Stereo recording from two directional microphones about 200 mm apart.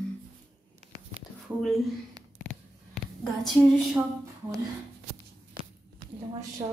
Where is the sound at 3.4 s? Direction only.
Centre (ahead or behind).